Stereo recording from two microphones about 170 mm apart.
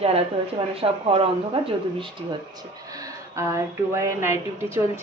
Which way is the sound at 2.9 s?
20° right (ahead or behind).